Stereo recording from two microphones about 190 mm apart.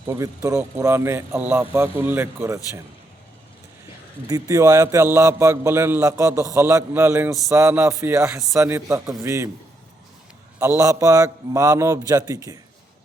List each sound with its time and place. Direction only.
0.1 s a man's voice: 15° right (ahead or behind)
4.3 s a man's voice: 20° right (ahead or behind)
10.6 s a man's voice: 15° right (ahead or behind)